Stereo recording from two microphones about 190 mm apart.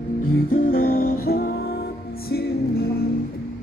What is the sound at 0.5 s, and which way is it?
Music, 50° left (ahead or behind).